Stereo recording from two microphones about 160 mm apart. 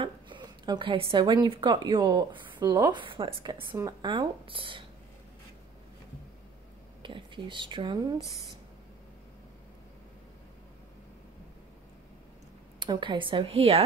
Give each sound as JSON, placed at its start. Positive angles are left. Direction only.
{"t": 0.0, "sound": "a woman's voice", "side_deg": -30}
{"t": 3.5, "sound": "speech", "side_deg": -15}
{"t": 4.0, "sound": "speech", "side_deg": -30}
{"t": 7.0, "sound": "speech", "side_deg": -30}
{"t": 12.7, "sound": "speech", "side_deg": -30}